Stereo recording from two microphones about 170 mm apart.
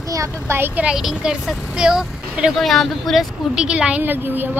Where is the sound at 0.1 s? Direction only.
15° right (ahead or behind).